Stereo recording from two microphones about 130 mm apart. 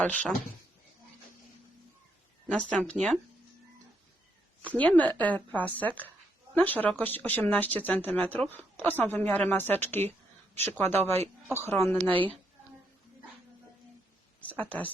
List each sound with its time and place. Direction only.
0.0 s speech: 10° left (ahead or behind)
2.5 s speech: 10° left (ahead or behind)
4.7 s a woman's voice: 10° left (ahead or behind)
11.9 s speech: 5° left (ahead or behind)
14.4 s speech: 10° left (ahead or behind)